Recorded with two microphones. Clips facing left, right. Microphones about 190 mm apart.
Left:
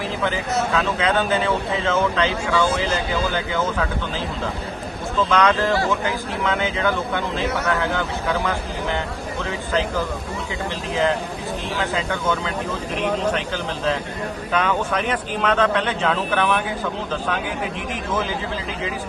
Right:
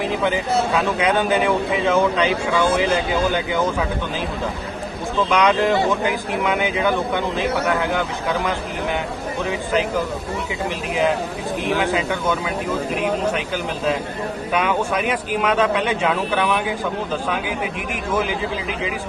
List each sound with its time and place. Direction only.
0.8 s speech: 15° right (ahead or behind)
5.3 s speech: 15° right (ahead or behind)
13.0 s speech: 10° right (ahead or behind)
14.5 s speech: 10° right (ahead or behind)
18.1 s speech: 10° right (ahead or behind)